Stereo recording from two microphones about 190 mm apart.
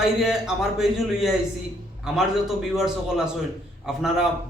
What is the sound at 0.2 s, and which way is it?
A man's voice, centre (ahead or behind).